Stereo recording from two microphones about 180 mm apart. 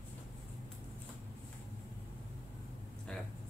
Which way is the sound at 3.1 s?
5° left (ahead or behind).